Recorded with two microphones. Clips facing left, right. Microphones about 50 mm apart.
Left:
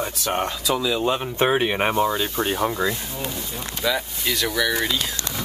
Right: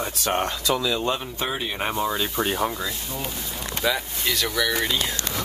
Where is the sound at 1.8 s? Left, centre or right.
Left.